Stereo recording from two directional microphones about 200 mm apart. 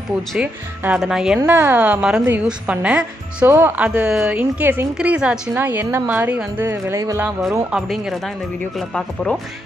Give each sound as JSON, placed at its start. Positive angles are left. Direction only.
{"t": 0.3, "sound": "speech", "side_deg": -5}